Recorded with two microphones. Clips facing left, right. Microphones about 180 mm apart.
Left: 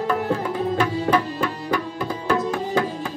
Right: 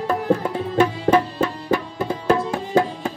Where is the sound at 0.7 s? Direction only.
25° right (ahead or behind).